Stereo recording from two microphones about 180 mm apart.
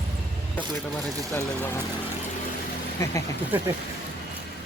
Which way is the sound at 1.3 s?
15° left (ahead or behind).